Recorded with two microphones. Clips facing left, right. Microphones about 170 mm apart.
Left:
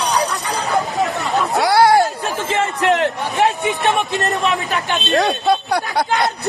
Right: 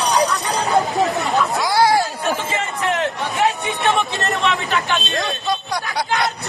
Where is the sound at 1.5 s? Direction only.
65° left (ahead or behind).